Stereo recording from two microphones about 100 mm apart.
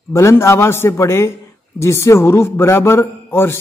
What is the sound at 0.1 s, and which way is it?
A man's voice, 25° left (ahead or behind).